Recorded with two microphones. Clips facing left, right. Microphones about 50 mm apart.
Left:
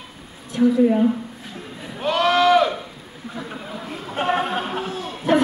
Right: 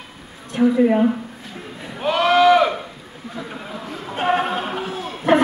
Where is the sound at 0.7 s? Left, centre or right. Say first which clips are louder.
Right 2 dB; right.